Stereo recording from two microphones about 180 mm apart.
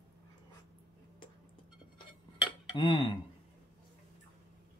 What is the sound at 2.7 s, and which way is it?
Speech, 25° left (ahead or behind).